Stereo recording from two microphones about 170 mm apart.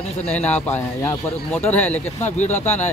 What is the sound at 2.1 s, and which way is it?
Speech, 45° left (ahead or behind).